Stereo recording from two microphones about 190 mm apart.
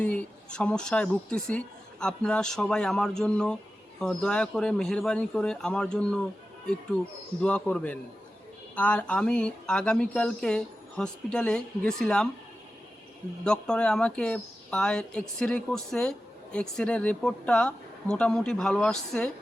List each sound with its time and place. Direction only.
0.0 s speech: 5° left (ahead or behind)
7.4 s speech: 5° left (ahead or behind)
13.4 s speech: 5° left (ahead or behind)